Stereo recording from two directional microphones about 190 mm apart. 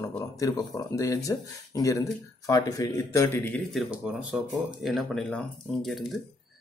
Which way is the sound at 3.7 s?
5° right (ahead or behind).